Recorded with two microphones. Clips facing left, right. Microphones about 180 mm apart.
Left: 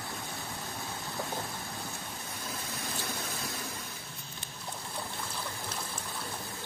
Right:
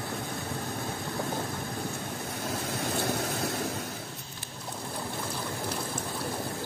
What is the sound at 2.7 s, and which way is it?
Vehicle, 65° right (ahead or behind).